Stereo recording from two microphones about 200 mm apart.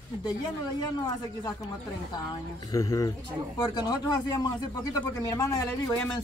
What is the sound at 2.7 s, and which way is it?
Speech, 15° left (ahead or behind).